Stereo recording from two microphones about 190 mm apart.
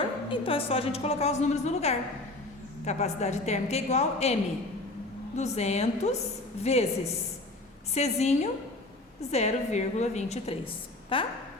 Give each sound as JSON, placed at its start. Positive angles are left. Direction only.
{"t": 0.3, "sound": "a woman's voice", "side_deg": 30}
{"t": 5.4, "sound": "a woman's voice", "side_deg": 35}